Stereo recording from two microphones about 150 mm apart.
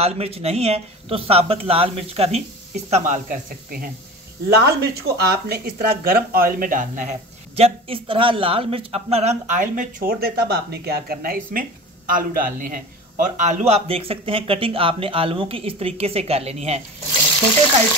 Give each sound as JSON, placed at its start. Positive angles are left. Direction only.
{"t": 0.0, "sound": "speech", "side_deg": -45}
{"t": 4.6, "sound": "a man's voice", "side_deg": -90}
{"t": 13.4, "sound": "speech", "side_deg": -45}